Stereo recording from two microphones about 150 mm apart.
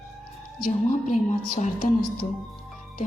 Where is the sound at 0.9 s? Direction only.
55° left (ahead or behind).